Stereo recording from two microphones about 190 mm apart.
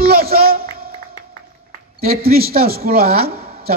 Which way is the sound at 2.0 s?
50° right (ahead or behind).